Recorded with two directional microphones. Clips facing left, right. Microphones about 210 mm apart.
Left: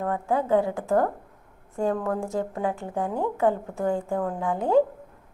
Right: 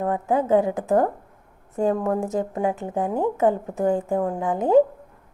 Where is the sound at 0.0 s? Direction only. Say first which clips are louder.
Right 3 dB; 20° right (ahead or behind).